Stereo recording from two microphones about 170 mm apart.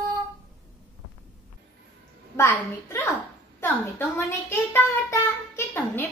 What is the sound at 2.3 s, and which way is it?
Speech, 15° left (ahead or behind).